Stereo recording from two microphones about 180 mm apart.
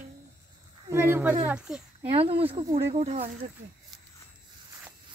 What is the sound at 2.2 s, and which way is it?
Speech, 30° right (ahead or behind).